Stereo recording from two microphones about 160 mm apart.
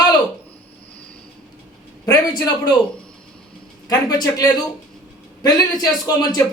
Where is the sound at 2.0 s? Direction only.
25° left (ahead or behind).